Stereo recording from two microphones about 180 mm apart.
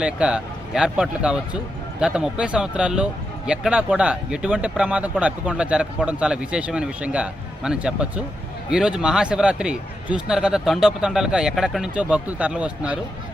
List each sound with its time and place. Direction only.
0.0 s a man's voice: 5° right (ahead or behind)